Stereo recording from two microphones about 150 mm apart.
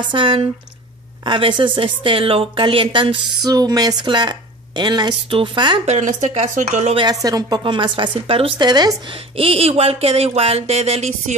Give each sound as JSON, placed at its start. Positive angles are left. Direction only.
{"t": 0.0, "sound": "a woman's voice", "side_deg": -35}
{"t": 5.9, "sound": "speech", "side_deg": -55}
{"t": 7.0, "sound": "a woman's voice", "side_deg": -25}
{"t": 9.4, "sound": "speech", "side_deg": -40}